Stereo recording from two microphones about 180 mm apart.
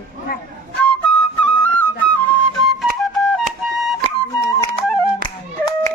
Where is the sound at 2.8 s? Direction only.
Centre (ahead or behind).